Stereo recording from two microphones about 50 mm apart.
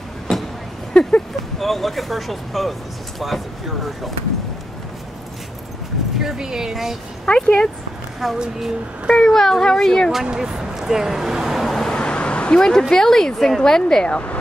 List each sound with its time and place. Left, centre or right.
1.6 s speech: centre
6.2 s speech: centre
7.2 s speech: centre
8.2 s speech: centre
9.1 s speech: centre
10.2 s speech: centre
11.8 s vehicle: centre
12.9 s speech: centre
14.0 s speech: left